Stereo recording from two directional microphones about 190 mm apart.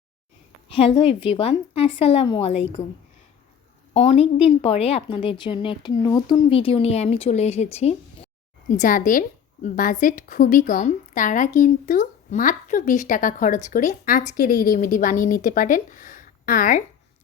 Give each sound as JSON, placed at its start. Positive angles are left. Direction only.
{"t": 0.7, "sound": "a woman's voice", "side_deg": 30}
{"t": 3.9, "sound": "speech", "side_deg": 30}
{"t": 8.8, "sound": "a woman's voice", "side_deg": 45}